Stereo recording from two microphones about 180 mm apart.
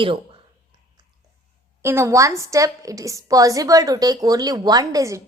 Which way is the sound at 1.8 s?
15° right (ahead or behind).